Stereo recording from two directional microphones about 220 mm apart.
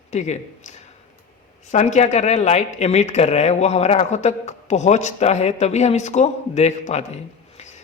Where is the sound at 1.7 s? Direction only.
30° left (ahead or behind).